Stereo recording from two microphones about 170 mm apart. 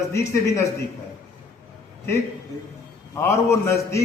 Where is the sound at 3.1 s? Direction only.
15° left (ahead or behind).